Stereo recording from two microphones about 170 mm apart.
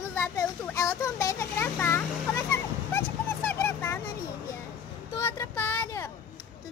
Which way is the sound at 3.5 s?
15° left (ahead or behind).